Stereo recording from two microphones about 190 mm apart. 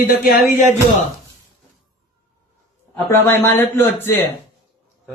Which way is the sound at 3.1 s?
10° left (ahead or behind).